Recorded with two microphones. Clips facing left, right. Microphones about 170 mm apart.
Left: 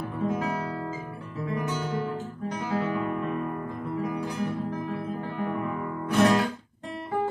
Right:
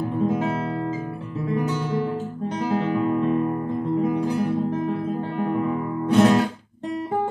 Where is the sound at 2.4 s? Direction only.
25° right (ahead or behind).